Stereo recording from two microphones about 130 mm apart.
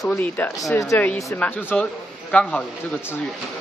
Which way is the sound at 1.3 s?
15° left (ahead or behind).